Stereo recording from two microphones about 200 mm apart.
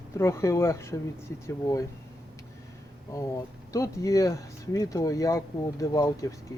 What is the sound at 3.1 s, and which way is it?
Speech, 15° left (ahead or behind).